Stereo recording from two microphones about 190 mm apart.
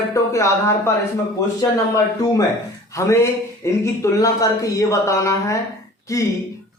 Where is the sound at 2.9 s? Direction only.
15° left (ahead or behind).